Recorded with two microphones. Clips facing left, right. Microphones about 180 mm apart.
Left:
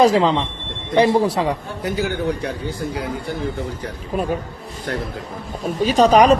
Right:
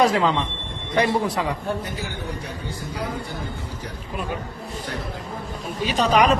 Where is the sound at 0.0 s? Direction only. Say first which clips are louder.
Left 4 dB; 30° left (ahead or behind).